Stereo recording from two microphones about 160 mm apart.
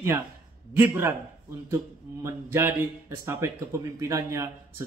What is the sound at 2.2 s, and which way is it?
A man's voice, 15° right (ahead or behind).